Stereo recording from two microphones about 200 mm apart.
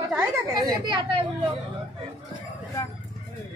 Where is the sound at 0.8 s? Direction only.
25° right (ahead or behind).